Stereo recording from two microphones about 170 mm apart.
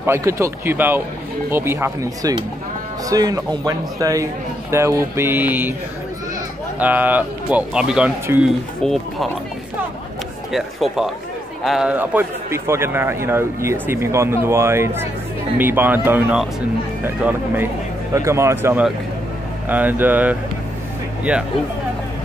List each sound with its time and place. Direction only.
0.0 s a man's voice: 15° right (ahead or behind)
6.8 s a man's voice: 10° right (ahead or behind)
10.5 s a man's voice: centre (ahead or behind)